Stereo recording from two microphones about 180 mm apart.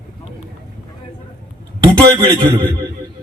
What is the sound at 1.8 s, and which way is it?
Speech, 25° right (ahead or behind).